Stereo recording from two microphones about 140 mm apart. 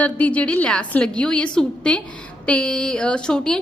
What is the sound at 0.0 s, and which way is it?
A woman's voice, 10° left (ahead or behind).